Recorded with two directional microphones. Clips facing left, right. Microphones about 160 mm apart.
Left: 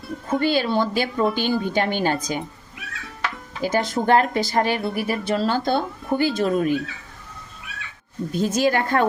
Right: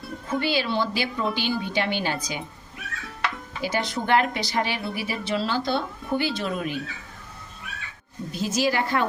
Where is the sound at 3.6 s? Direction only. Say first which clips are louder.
Left 5 dB; 45° left (ahead or behind).